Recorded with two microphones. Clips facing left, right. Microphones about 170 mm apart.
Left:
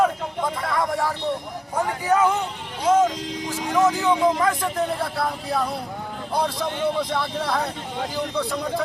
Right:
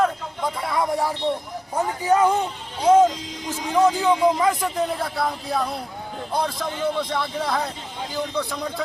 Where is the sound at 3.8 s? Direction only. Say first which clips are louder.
Right 1 dB; 15° right (ahead or behind).